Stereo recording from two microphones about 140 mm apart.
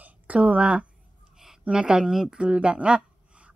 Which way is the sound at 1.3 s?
5° right (ahead or behind).